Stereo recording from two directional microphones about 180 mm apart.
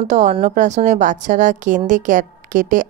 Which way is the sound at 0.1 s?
40° right (ahead or behind).